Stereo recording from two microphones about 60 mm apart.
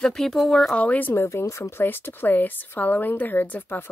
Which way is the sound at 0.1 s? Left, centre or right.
Centre.